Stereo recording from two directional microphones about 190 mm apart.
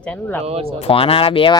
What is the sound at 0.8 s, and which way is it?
Speech, 30° left (ahead or behind).